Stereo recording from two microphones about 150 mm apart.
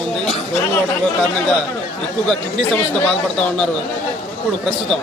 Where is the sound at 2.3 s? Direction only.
5° left (ahead or behind).